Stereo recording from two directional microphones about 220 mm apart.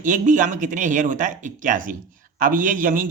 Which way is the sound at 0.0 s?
35° right (ahead or behind).